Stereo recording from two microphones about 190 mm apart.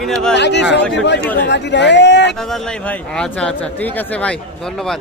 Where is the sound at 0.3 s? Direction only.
65° left (ahead or behind).